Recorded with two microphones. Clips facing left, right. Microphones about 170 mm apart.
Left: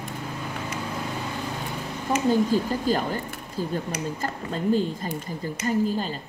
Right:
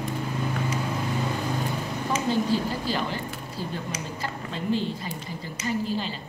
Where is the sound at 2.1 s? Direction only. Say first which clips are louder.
Left 4 dB; 45° left (ahead or behind).